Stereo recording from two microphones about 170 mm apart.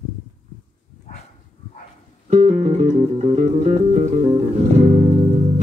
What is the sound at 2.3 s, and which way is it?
Music, 45° right (ahead or behind).